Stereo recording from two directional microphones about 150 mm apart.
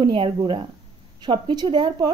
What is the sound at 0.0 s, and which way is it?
Speech, 35° right (ahead or behind).